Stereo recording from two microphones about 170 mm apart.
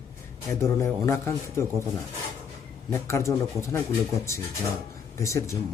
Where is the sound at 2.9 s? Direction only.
15° left (ahead or behind).